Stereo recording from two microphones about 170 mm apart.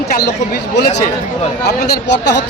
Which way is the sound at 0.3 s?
70° left (ahead or behind).